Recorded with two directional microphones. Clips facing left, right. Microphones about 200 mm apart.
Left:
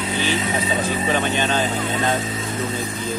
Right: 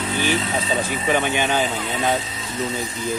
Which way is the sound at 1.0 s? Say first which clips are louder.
Right 3 dB; 10° right (ahead or behind).